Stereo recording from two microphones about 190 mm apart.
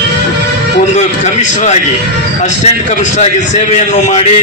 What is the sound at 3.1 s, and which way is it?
A man's voice, 40° left (ahead or behind).